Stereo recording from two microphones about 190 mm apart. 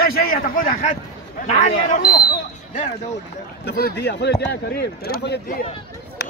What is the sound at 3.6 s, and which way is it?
A man's voice, 60° left (ahead or behind).